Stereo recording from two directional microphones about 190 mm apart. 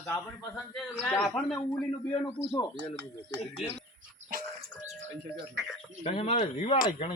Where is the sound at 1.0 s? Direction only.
Centre (ahead or behind).